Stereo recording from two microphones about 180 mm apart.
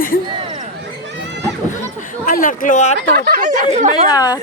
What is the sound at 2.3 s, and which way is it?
Speech, 50° left (ahead or behind).